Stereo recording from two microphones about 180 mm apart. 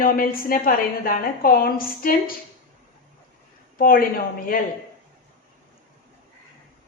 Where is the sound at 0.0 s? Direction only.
50° left (ahead or behind).